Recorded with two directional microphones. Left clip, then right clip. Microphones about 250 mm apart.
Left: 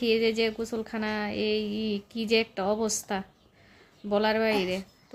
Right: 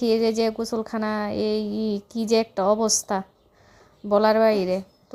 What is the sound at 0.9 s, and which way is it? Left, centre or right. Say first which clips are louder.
Speech: right 5 dB; right.